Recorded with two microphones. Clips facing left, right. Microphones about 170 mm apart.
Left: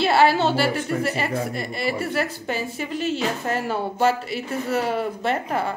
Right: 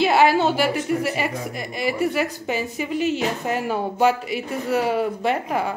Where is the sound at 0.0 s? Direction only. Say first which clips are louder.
Right 1 dB; 15° right (ahead or behind).